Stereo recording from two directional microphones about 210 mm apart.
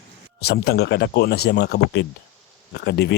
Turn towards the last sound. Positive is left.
turn(degrees=55)  # may be behind; listen again after turning